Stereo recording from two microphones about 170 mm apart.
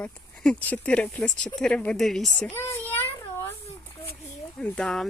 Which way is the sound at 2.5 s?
15° left (ahead or behind).